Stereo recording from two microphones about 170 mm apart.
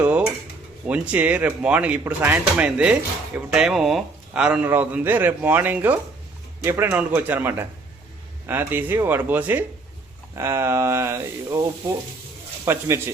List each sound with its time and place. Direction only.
0.0 s dishes: 5° right (ahead or behind)
0.9 s speech: 10° right (ahead or behind)